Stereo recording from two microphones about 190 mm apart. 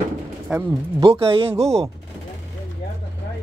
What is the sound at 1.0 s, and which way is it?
Speech, 30° right (ahead or behind).